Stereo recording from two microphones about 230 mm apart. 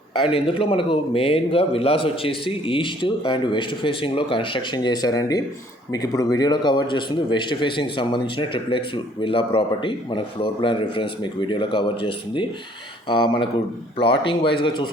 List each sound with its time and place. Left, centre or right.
0.2 s a man's voice: left